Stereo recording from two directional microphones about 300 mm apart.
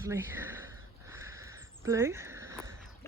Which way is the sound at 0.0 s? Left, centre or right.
Centre.